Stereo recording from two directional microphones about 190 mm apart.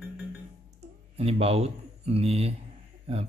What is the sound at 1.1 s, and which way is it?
Speech, 30° right (ahead or behind).